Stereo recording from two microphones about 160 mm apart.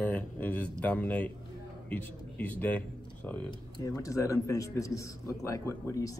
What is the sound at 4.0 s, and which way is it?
A man's voice, 20° left (ahead or behind).